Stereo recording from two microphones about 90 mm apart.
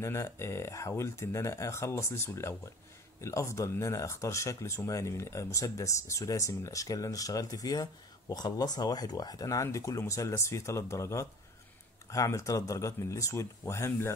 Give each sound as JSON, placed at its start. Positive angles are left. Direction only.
{"t": 0.0, "sound": "speech", "side_deg": 30}